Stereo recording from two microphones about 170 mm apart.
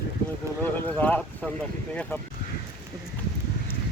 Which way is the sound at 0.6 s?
10° left (ahead or behind).